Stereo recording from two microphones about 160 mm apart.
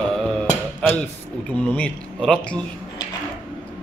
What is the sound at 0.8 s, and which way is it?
Speech, 5° left (ahead or behind).